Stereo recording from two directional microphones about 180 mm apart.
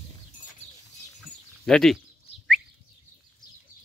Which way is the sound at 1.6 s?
Centre (ahead or behind).